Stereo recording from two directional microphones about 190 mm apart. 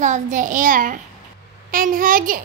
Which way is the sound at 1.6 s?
45° right (ahead or behind).